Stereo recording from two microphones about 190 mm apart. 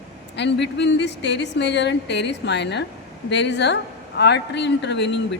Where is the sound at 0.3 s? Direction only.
65° left (ahead or behind).